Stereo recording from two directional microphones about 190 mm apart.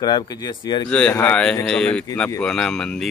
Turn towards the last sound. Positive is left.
turn(degrees=5)  # may be behind; listen again after turning